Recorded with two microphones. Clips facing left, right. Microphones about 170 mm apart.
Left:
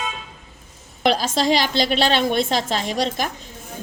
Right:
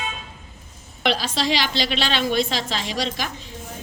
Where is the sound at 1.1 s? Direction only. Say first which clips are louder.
Left 4 dB; 45° left (ahead or behind).